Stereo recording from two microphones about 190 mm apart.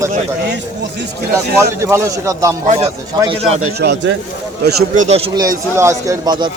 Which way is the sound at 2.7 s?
35° right (ahead or behind).